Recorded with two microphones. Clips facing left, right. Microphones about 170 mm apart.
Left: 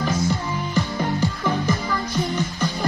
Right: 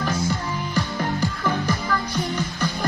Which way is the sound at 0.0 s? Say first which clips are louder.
Left 2 dB; 10° left (ahead or behind).